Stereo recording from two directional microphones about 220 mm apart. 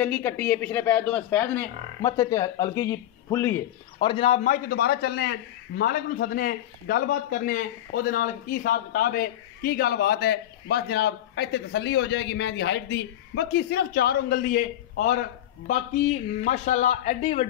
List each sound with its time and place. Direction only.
0.0 s speech: 10° left (ahead or behind)
4.1 s a man's voice: 25° left (ahead or behind); by 16.1 s 50° left (ahead or behind)
16.4 s a man's voice: 35° left (ahead or behind)